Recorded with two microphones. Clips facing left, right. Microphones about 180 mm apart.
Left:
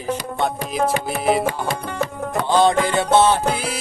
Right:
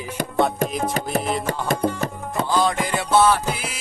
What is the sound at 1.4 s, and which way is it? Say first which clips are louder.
Music: right 1 dB; 45° right (ahead or behind).